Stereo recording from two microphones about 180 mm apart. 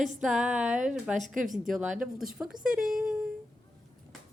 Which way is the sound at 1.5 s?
Centre (ahead or behind).